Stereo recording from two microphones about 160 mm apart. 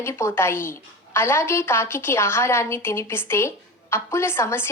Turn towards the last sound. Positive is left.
turn(degrees=15)  # may be behind; listen again after turning